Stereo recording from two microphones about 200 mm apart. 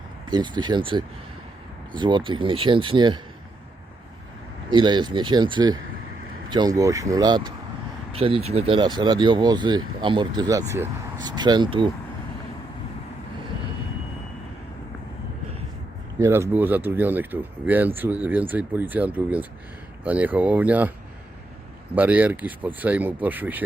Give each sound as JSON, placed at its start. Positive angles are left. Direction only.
{"t": 0.3, "sound": "speech", "side_deg": -20}
{"t": 4.7, "sound": "speech", "side_deg": -25}
{"t": 16.1, "sound": "speech", "side_deg": -15}
{"t": 21.9, "sound": "speech", "side_deg": -10}